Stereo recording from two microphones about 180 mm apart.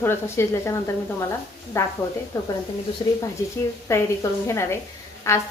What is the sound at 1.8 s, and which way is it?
Speech, 15° left (ahead or behind).